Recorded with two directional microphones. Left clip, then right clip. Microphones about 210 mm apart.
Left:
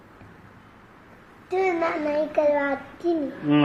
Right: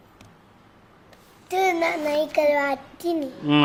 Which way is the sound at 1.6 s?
30° right (ahead or behind).